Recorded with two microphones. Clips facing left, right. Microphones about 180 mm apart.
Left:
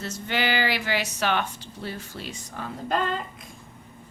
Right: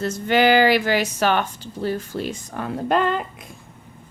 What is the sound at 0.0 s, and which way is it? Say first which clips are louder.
A woman's voice: right 10 dB; 50° right (ahead or behind).